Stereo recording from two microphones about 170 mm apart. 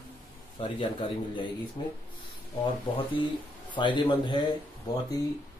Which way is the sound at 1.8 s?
30° left (ahead or behind).